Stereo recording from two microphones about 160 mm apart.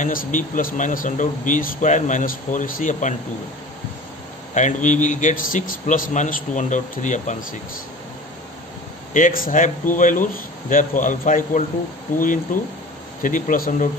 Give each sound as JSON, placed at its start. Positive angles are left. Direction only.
{"t": 0.0, "sound": "speech", "side_deg": 60}
{"t": 4.6, "sound": "speech", "side_deg": 50}
{"t": 9.1, "sound": "speech", "side_deg": 60}